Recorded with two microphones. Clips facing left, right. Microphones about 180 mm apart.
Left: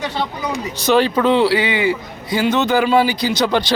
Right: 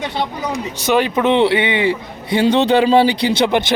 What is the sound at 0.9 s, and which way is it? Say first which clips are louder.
A man's voice: even; 20° right (ahead or behind).